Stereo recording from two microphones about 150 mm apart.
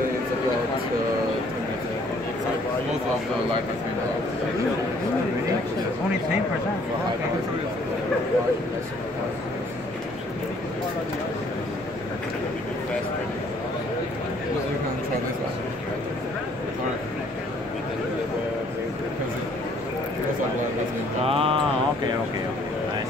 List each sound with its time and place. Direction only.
21.2 s mantra: 40° right (ahead or behind)